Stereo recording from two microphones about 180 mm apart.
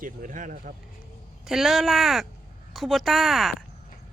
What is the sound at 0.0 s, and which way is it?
Speech, 50° right (ahead or behind).